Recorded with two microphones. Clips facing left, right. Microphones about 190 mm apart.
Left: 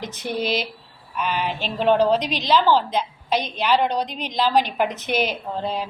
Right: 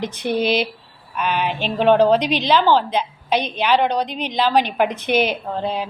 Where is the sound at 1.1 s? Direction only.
60° right (ahead or behind).